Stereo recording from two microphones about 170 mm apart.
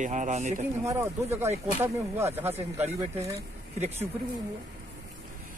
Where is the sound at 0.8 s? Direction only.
15° right (ahead or behind).